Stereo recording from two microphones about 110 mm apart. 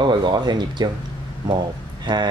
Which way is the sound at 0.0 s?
45° right (ahead or behind).